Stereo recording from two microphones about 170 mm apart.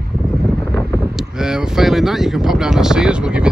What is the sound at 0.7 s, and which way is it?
Speech, centre (ahead or behind).